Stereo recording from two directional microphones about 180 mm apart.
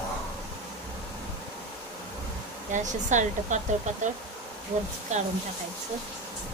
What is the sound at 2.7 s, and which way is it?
Speech, 45° right (ahead or behind).